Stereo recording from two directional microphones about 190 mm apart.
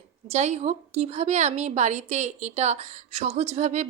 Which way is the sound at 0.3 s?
35° right (ahead or behind).